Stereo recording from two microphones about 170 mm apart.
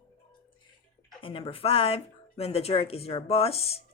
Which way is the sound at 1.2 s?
30° left (ahead or behind).